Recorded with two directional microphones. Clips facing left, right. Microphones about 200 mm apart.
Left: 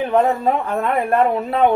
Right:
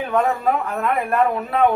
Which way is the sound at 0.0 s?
30° left (ahead or behind).